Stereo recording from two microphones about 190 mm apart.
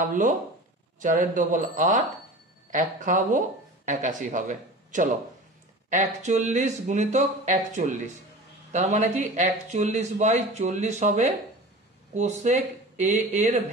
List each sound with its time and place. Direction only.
0.0 s speech: 45° right (ahead or behind)